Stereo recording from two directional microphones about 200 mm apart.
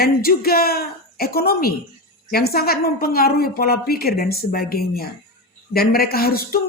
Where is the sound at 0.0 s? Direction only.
50° left (ahead or behind).